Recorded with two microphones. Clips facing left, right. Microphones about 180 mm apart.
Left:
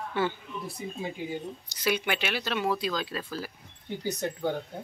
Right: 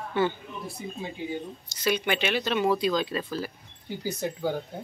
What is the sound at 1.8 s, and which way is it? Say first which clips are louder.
Speech: right 2 dB; 10° left (ahead or behind).